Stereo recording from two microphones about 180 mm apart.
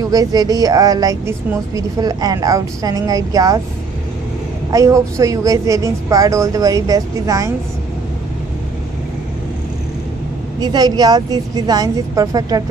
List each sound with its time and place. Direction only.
0.1 s speech: 20° right (ahead or behind)
4.7 s speech: 15° right (ahead or behind)
10.6 s speech: 20° right (ahead or behind)